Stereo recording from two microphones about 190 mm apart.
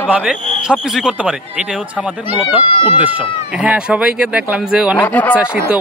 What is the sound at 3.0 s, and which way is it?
Speech, 5° right (ahead or behind).